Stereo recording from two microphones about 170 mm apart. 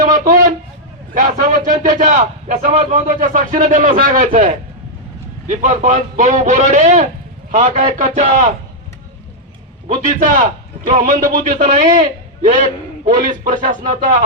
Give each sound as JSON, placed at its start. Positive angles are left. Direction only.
{"t": 0.1, "sound": "a man's voice", "side_deg": -50}
{"t": 9.9, "sound": "a man's voice", "side_deg": -50}
{"t": 13.1, "sound": "a man's voice", "side_deg": -50}